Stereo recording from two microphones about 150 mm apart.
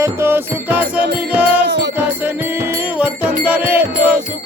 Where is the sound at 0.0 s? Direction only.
15° right (ahead or behind).